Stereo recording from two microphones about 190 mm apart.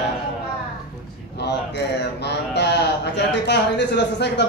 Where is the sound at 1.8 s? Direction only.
65° left (ahead or behind).